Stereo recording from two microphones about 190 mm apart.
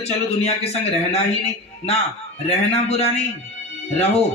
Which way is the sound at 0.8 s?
35° left (ahead or behind).